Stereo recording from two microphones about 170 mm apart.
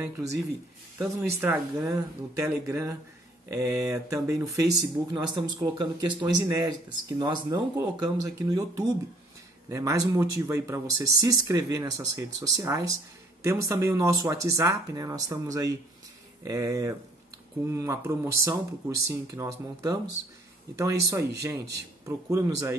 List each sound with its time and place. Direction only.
0.0 s speech: 20° right (ahead or behind)